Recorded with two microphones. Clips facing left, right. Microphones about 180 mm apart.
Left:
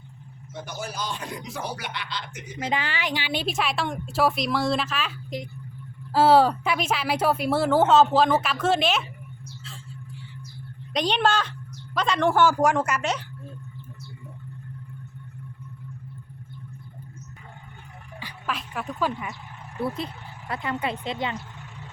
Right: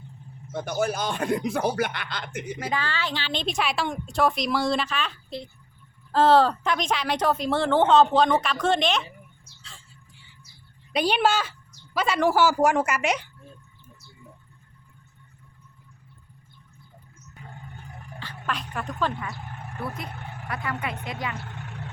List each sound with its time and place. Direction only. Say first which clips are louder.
0.5 s speech: right 8 dB; 55° right (ahead or behind)
2.6 s a woman's voice: left 3 dB; 20° left (ahead or behind); by 5.1 s 5° left (ahead or behind)
6.1 s speech: left 1 dB; 10° left (ahead or behind)
9.7 s a sound: left 5 dB; centre (ahead or behind)
10.9 s speech: right 1 dB; 5° right (ahead or behind)
18.2 s music: even; 10° left (ahead or behind)
18.5 s a woman's voice: left 1 dB; 5° left (ahead or behind)
20.1 s vehicle: right 3 dB; 55° right (ahead or behind)
20.5 s speech: left 3 dB; 25° left (ahead or behind)
21.3 s vehicle: right 1 dB; 60° right (ahead or behind)